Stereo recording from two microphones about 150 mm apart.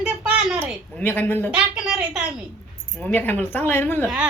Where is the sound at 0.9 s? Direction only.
10° left (ahead or behind).